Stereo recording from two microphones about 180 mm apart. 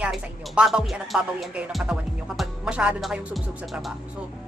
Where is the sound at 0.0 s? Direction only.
5° right (ahead or behind).